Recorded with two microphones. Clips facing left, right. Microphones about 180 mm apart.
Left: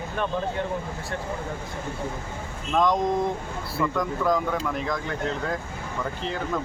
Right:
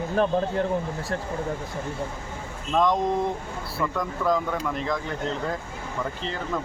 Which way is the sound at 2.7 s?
Centre (ahead or behind).